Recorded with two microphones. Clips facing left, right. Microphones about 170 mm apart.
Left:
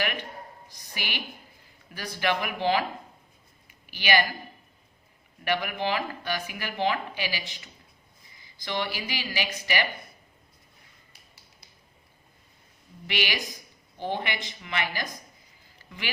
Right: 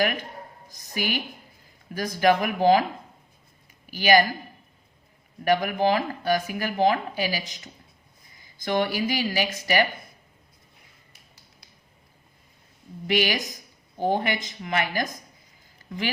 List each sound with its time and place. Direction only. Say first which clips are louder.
0.0 s a woman's voice: right 6 dB; 40° right (ahead or behind)
3.7 s a sound: right 6 dB; 40° right (ahead or behind)
5.5 s speech: right 6 dB; 40° right (ahead or behind)
13.1 s speech: right 7 dB; 40° right (ahead or behind)